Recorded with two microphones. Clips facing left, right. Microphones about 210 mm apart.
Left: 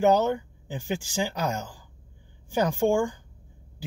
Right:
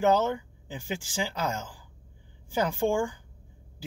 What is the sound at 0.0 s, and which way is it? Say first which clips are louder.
Speech: left 3 dB; 15° left (ahead or behind).